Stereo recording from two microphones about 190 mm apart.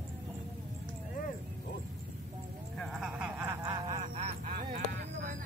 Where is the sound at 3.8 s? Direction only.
40° right (ahead or behind).